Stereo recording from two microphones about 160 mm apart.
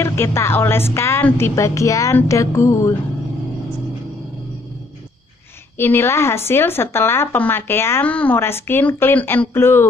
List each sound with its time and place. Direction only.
0.0 s speech: 15° left (ahead or behind)
5.8 s speech: 15° left (ahead or behind)